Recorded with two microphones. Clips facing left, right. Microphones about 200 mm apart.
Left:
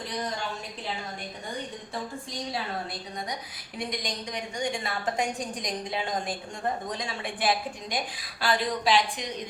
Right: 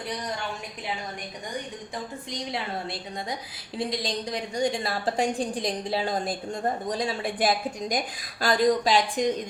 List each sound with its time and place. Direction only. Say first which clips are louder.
2.5 s a woman's voice: right 1 dB; 25° right (ahead or behind); by 9.3 s 45° right (ahead or behind)